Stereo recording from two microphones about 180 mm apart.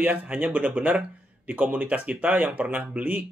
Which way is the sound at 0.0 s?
10° right (ahead or behind).